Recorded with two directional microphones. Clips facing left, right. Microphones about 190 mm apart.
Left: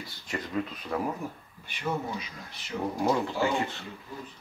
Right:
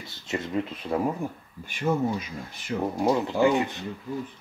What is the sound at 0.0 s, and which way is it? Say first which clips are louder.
Speech: right 4 dB; 25° right (ahead or behind).